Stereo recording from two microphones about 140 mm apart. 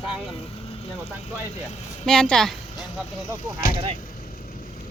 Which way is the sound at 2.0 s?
5° left (ahead or behind).